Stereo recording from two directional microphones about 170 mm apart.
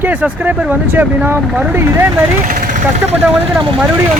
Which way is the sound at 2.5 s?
45° right (ahead or behind).